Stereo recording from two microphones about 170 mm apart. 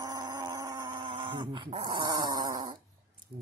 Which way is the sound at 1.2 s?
30° right (ahead or behind).